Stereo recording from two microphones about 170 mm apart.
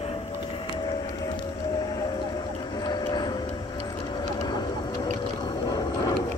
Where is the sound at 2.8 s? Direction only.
25° left (ahead or behind).